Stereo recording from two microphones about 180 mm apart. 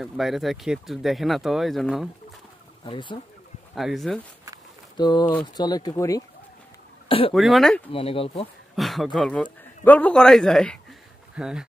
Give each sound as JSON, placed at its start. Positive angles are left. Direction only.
{"t": 0.0, "sound": "speech", "side_deg": 0}
{"t": 2.8, "sound": "speech", "side_deg": 25}
{"t": 3.7, "sound": "speech", "side_deg": 0}
{"t": 4.9, "sound": "speech", "side_deg": 25}
{"t": 7.1, "sound": "speech", "side_deg": 30}
{"t": 7.3, "sound": "speech", "side_deg": 0}
{"t": 7.9, "sound": "speech", "side_deg": 30}
{"t": 8.7, "sound": "speech", "side_deg": 0}